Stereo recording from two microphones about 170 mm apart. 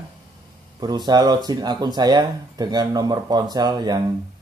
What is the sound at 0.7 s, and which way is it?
Speech, 25° right (ahead or behind).